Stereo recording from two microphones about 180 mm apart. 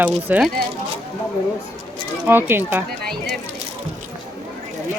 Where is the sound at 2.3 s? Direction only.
10° right (ahead or behind).